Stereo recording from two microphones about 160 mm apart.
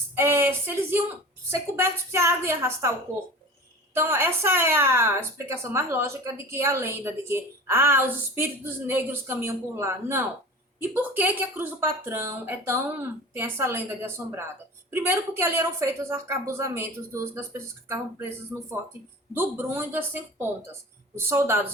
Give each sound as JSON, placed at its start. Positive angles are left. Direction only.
{"t": 0.2, "sound": "speech", "side_deg": -15}
{"t": 3.9, "sound": "speech", "side_deg": -15}